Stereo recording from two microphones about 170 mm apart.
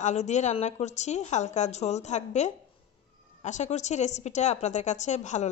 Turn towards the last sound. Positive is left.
turn(degrees=45)  # may be behind; listen again after turning